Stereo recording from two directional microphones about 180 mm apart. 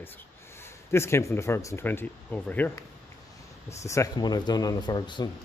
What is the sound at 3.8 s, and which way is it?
Speech, 15° left (ahead or behind).